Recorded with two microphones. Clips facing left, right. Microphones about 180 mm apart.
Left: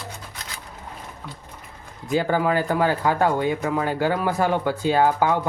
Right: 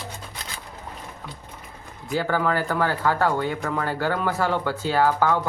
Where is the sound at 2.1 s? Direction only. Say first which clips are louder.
Left 3 dB; 15° left (ahead or behind).